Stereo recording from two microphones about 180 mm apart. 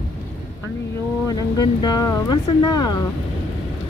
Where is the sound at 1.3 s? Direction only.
20° left (ahead or behind).